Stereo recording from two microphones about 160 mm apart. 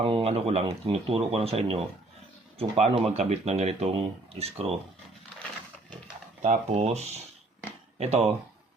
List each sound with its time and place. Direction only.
0.0 s speech: 35° right (ahead or behind)
6.4 s speech: 45° right (ahead or behind)